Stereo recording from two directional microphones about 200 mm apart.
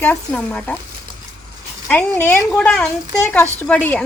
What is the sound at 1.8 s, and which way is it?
A woman's voice, 5° left (ahead or behind).